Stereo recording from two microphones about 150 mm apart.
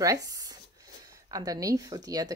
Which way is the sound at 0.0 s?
20° right (ahead or behind).